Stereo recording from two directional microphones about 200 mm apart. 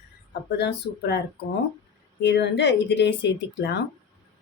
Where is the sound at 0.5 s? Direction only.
55° left (ahead or behind).